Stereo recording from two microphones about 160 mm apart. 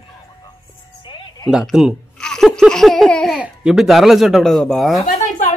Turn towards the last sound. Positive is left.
turn(degrees=55)  # may be behind; listen again after turning